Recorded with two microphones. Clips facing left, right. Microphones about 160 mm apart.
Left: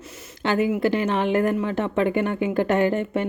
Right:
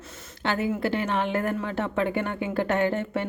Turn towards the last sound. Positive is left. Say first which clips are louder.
# left 4 dB
turn(degrees=15)  # may be behind; listen again after turning